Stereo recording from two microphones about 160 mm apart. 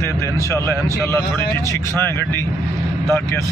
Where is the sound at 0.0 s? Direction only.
15° left (ahead or behind).